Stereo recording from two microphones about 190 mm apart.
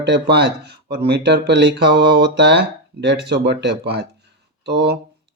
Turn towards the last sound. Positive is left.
turn(degrees=-60)  # may be behind; listen again after turning